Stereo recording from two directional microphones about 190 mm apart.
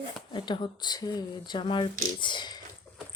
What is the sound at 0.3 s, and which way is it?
Speech, 25° left (ahead or behind).